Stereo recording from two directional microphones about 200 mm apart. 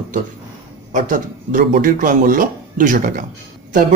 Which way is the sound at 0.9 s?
40° right (ahead or behind).